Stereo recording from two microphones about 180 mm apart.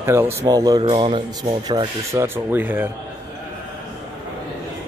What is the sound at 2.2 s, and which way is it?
Speech, 10° right (ahead or behind).